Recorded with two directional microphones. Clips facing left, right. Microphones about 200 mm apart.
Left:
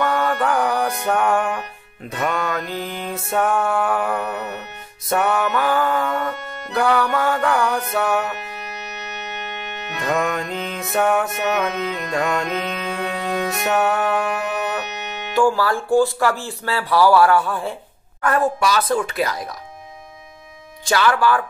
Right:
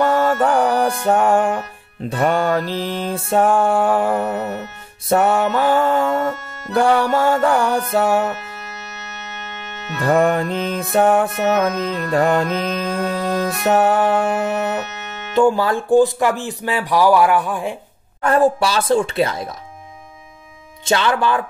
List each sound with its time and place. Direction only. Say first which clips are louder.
0.0 s music: right 4 dB; 30° right (ahead or behind)
2.7 s music: right 5 dB; centre (ahead or behind)
3.2 s music: right 4 dB; 30° right (ahead or behind)
8.4 s music: left 1 dB; 15° left (ahead or behind)
10.0 s music: right 6 dB; 30° right (ahead or behind)
10.5 s music: right 5 dB; centre (ahead or behind)
10.9 s music: right 4 dB; 30° right (ahead or behind)
12.5 s music: right 4 dB; centre (ahead or behind)
13.7 s music: right 5 dB; 35° right (ahead or behind)
14.9 s music: left 2 dB; 15° left (ahead or behind)
15.3 s speech: right 3 dB; 20° right (ahead or behind)
18.2 s music: right 4 dB; 30° right (ahead or behind)
20.8 s music: even; 25° right (ahead or behind)